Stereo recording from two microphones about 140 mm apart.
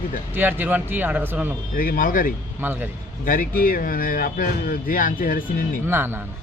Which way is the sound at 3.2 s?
80° left.